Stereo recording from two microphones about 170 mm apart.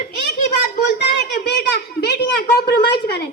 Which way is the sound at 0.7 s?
85° left.